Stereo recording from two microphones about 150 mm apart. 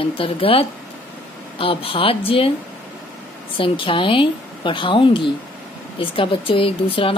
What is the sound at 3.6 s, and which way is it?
Speech, 35° left (ahead or behind).